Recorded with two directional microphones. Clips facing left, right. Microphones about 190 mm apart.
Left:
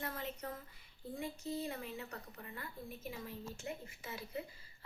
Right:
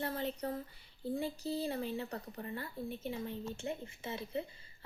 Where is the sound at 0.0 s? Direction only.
30° right (ahead or behind).